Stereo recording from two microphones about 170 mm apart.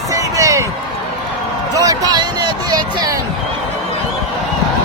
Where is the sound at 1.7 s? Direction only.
20° right (ahead or behind).